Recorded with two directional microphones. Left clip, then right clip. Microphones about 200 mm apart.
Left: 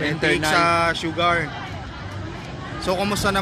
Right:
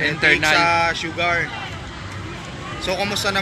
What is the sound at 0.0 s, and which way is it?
Speech, 15° left (ahead or behind).